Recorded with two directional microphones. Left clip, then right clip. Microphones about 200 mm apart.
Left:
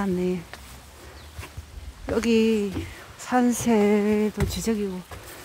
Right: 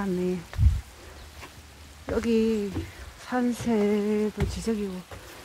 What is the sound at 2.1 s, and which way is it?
Speech, 15° left (ahead or behind).